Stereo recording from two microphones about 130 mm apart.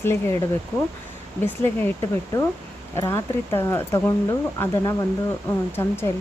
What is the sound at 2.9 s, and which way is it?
Speech, 25° left (ahead or behind).